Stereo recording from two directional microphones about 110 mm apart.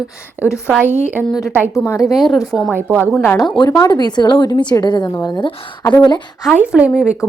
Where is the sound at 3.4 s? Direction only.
45° left (ahead or behind).